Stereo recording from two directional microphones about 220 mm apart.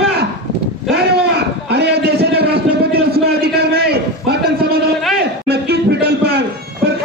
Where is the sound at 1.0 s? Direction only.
50° right (ahead or behind).